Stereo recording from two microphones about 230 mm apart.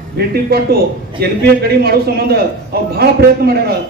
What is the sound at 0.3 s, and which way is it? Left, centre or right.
A man's voice, right.